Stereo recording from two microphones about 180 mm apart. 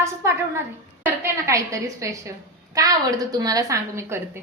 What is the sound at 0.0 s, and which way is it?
A woman's voice, 15° right (ahead or behind).